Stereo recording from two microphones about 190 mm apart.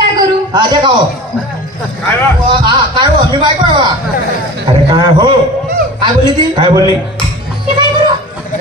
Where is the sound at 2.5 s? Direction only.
25° right (ahead or behind).